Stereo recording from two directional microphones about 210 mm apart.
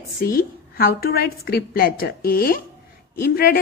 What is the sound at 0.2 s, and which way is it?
A woman's voice, 45° left (ahead or behind).